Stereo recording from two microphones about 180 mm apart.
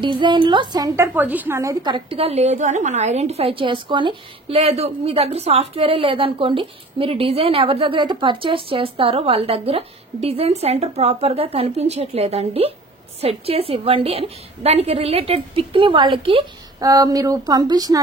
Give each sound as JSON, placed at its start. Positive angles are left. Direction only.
{"t": 0.0, "sound": "a woman's voice", "side_deg": -25}